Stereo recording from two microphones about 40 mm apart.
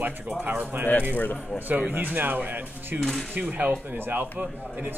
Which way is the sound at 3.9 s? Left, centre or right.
Right.